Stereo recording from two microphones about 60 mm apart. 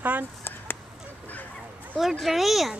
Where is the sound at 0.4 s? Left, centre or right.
Left.